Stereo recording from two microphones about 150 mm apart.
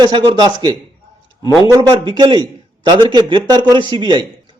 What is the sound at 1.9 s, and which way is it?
A man's voice, 30° right (ahead or behind).